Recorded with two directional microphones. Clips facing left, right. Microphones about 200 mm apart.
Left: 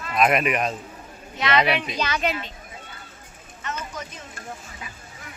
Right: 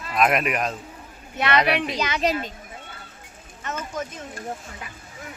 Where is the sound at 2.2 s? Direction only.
40° right (ahead or behind).